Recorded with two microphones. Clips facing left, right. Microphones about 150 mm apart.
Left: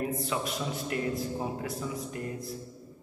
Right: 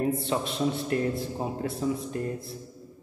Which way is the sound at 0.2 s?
25° right (ahead or behind).